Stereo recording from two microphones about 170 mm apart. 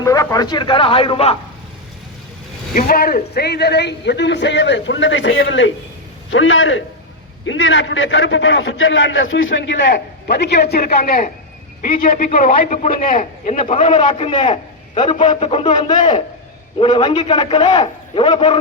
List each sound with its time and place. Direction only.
0.0 s a man's voice: 20° left (ahead or behind)
2.7 s a man's voice: 55° left (ahead or behind); by 6.5 s 90° left
7.6 s a man's voice: 90° left; by 14.1 s 45° left (ahead or behind)
14.1 s a man's voice: 30° left (ahead or behind)